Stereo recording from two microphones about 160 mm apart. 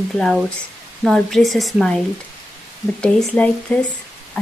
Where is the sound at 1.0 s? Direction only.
Centre (ahead or behind).